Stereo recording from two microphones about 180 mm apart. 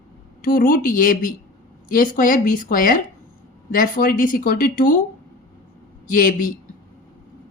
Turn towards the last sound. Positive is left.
turn(degrees=50)  # may be behind; listen again after turning